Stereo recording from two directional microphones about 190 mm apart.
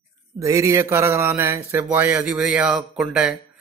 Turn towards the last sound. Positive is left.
turn(degrees=-5)  # may be behind; listen again after turning